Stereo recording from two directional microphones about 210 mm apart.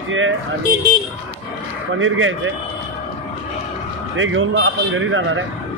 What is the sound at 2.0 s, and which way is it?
Speech, 65° right (ahead or behind).